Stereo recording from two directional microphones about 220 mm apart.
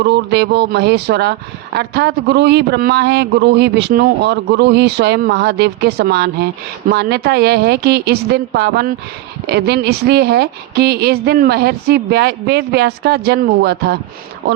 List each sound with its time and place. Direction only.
0.0 s speech: 50° right (ahead or behind)